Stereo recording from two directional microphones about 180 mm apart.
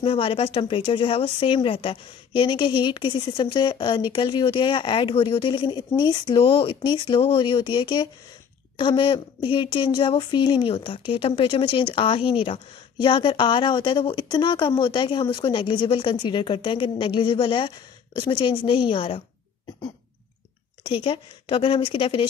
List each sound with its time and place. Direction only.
0.0 s speech: 30° left (ahead or behind)
20.8 s speech: 30° left (ahead or behind)